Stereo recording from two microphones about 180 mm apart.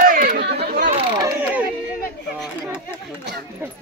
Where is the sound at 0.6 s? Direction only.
50° right (ahead or behind).